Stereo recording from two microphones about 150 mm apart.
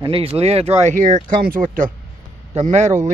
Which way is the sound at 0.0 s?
40° right (ahead or behind).